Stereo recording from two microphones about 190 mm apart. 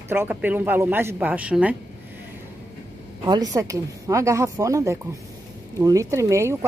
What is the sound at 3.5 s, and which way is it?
A woman's voice, 15° right (ahead or behind).